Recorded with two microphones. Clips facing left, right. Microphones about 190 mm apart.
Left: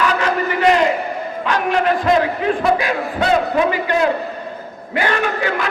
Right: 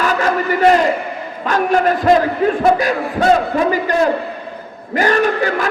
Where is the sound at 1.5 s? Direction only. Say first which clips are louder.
Right 3 dB; 45° right (ahead or behind).